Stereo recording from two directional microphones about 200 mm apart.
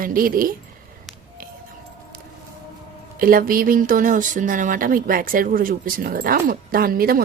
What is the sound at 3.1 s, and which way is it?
Speech, 45° right (ahead or behind).